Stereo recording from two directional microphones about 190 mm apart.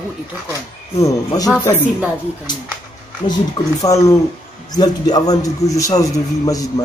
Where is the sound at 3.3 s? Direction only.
20° left (ahead or behind).